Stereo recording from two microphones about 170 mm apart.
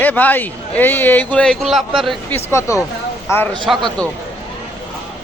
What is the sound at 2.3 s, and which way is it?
Speech, 15° left (ahead or behind).